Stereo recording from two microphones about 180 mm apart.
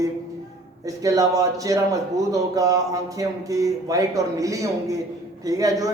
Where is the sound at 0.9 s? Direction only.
20° right (ahead or behind).